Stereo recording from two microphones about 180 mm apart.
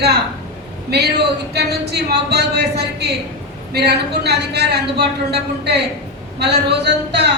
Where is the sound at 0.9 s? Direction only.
65° right (ahead or behind).